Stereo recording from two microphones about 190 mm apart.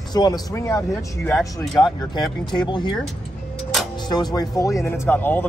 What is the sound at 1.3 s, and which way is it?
Speech, centre (ahead or behind).